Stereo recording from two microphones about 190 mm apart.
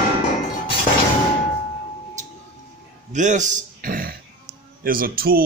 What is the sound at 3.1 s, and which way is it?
Speech, 40° right (ahead or behind).